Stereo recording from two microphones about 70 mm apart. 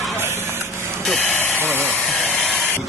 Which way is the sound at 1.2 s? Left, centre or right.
Left.